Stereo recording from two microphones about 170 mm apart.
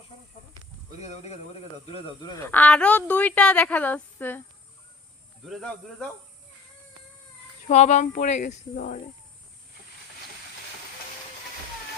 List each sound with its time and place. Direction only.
1.0 s speech: 40° left (ahead or behind)
2.3 s a woman's voice: 10° left (ahead or behind)
5.5 s speech: 5° left (ahead or behind)
7.7 s speech: 40° left (ahead or behind)